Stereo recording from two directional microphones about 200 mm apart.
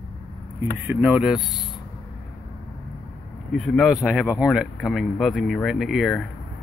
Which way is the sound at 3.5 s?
Centre (ahead or behind).